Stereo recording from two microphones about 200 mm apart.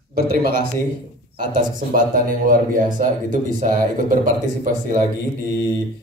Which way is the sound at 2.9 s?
40° right (ahead or behind).